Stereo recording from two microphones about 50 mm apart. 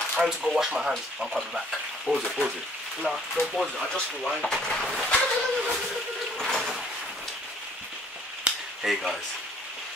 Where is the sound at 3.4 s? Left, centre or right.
Left.